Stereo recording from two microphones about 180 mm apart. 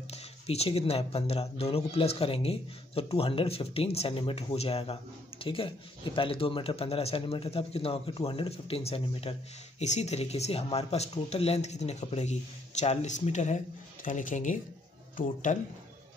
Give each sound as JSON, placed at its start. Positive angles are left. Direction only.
{"t": 0.1, "sound": "speech", "side_deg": 35}